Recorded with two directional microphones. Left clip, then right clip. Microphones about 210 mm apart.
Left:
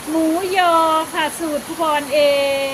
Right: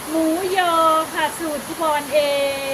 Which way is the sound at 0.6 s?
30° left (ahead or behind).